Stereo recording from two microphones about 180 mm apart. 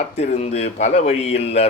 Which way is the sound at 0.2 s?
35° left (ahead or behind).